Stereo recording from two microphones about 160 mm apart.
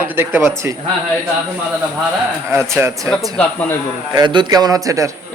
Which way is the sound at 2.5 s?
15° right (ahead or behind).